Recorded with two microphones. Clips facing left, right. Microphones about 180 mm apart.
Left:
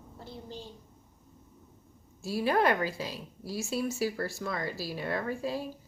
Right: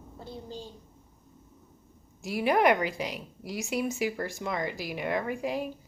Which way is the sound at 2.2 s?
15° right (ahead or behind).